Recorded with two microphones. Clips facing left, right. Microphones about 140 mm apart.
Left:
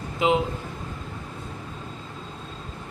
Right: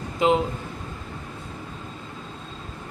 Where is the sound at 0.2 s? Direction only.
Centre (ahead or behind).